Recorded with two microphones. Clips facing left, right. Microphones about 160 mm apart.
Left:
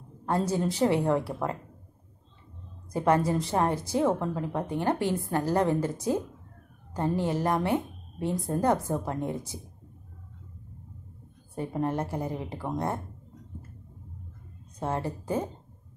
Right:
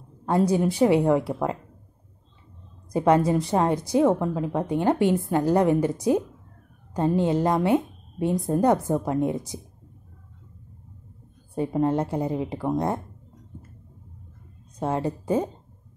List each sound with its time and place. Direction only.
0.2 s a woman's voice: 15° right (ahead or behind)
2.9 s a woman's voice: 15° right (ahead or behind)
11.5 s a woman's voice: 20° right (ahead or behind)
14.8 s a woman's voice: 20° right (ahead or behind)